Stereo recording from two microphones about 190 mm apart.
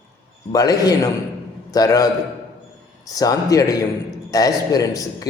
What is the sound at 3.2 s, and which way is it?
A man's voice, 20° left (ahead or behind).